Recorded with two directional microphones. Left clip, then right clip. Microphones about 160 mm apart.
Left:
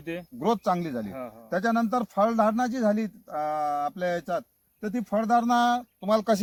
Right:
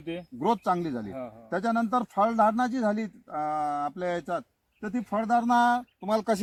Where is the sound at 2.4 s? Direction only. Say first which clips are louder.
Even; 40° left (ahead or behind).